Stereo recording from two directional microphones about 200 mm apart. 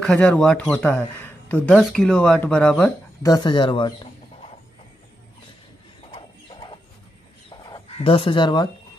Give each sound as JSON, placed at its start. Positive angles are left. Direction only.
{"t": 0.0, "sound": "speech", "side_deg": 5}
{"t": 3.3, "sound": "speech", "side_deg": 20}
{"t": 6.1, "sound": "a sound", "side_deg": 25}